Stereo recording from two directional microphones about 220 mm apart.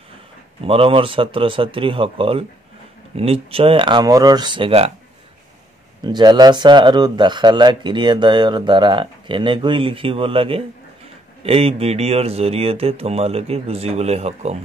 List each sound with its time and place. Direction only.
0.7 s speech: 25° right (ahead or behind)
6.0 s speech: 20° right (ahead or behind)